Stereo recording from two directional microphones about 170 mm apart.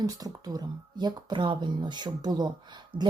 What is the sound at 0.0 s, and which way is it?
A woman's voice, 20° right (ahead or behind).